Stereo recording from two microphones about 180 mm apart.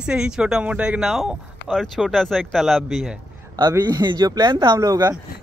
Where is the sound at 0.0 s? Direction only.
5° right (ahead or behind).